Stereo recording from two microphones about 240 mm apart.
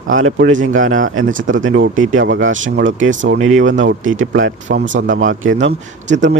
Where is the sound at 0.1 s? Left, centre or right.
Right.